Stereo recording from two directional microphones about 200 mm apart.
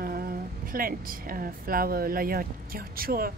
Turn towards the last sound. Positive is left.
turn(degrees=-45)  # may be behind; listen again after turning